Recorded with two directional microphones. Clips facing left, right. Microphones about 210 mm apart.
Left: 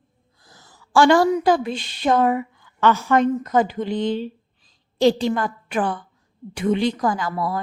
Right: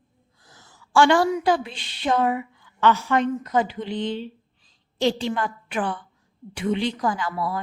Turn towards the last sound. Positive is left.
turn(degrees=40)  # may be behind; listen again after turning